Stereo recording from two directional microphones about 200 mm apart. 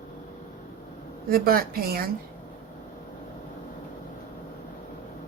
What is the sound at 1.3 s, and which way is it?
Speech, 50° right (ahead or behind).